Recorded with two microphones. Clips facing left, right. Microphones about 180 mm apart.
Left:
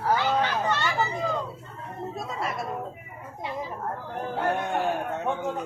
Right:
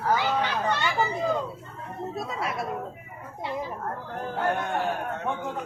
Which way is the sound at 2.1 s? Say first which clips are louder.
Right 1 dB; centre (ahead or behind).